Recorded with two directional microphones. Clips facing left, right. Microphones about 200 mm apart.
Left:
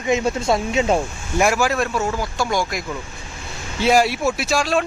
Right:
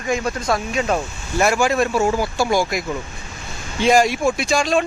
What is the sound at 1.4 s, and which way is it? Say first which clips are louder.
Speech: right 1 dB; 5° left (ahead or behind).